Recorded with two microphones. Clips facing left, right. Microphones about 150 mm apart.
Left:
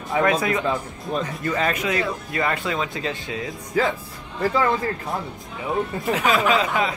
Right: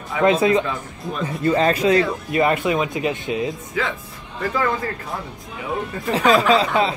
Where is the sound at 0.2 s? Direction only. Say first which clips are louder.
Right 5 dB; 25° right (ahead or behind).